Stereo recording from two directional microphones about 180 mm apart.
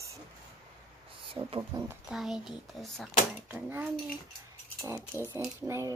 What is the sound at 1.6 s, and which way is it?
Speech, 15° right (ahead or behind).